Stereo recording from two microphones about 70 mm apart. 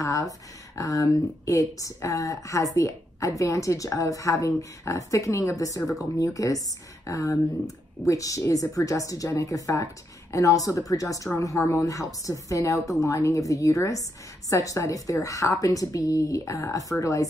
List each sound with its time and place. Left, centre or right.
0.0 s speech: left